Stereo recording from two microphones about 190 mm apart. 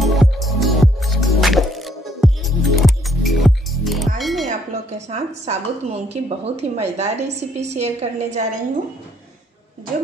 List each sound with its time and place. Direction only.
0.0 s music: centre (ahead or behind)
4.5 s a woman's voice: 35° right (ahead or behind)